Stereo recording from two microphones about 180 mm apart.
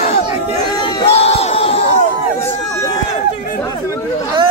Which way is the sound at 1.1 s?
35° left (ahead or behind).